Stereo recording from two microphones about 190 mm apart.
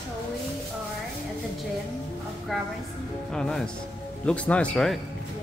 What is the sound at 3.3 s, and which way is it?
Speech, 5° left (ahead or behind).